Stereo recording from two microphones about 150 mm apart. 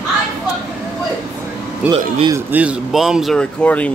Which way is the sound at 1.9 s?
35° right (ahead or behind).